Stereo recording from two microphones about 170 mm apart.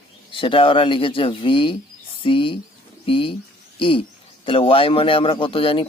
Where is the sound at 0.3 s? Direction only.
30° left (ahead or behind).